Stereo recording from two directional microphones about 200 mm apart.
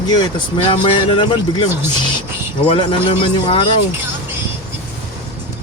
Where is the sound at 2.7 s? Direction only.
25° left (ahead or behind).